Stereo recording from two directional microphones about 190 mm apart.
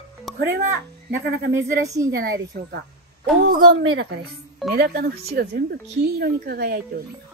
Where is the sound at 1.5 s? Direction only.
15° right (ahead or behind).